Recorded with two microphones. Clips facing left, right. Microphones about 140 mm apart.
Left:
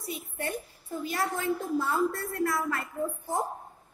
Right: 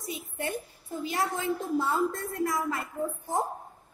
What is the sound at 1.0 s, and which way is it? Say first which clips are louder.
A woman's voice: even; 20° right (ahead or behind).